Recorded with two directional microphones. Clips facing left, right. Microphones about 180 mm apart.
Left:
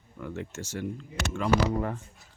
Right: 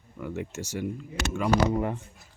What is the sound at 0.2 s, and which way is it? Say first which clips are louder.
Speech: right 3 dB; 10° right (ahead or behind).